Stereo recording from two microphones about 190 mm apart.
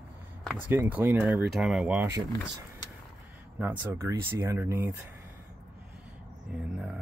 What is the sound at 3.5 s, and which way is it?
Speech, 10° right (ahead or behind).